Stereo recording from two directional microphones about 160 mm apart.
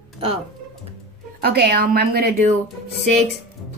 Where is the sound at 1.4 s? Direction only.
80° right.